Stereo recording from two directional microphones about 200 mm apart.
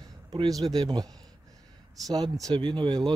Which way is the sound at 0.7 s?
20° right (ahead or behind).